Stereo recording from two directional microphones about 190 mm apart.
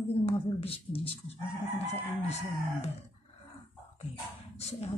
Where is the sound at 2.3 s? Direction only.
35° left (ahead or behind).